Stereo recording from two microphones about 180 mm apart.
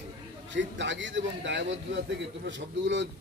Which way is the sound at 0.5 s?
90° right.